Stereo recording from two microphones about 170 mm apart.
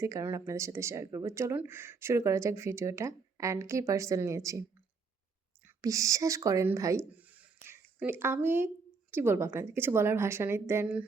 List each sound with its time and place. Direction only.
0.0 s speech: 20° right (ahead or behind)
5.6 s speech: 20° right (ahead or behind)